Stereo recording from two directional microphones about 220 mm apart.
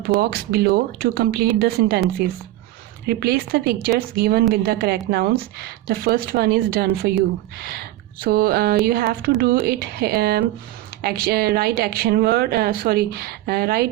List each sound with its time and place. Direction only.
0.2 s speech: 45° right (ahead or behind)